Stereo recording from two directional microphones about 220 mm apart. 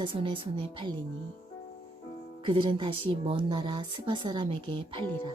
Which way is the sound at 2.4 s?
20° right (ahead or behind).